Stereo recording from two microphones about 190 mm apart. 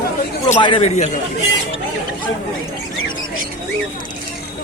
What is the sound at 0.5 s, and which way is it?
Speech, 25° left (ahead or behind).